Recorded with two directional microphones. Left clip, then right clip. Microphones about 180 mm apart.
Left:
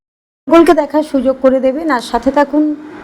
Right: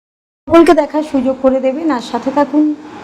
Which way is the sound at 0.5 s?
Centre (ahead or behind).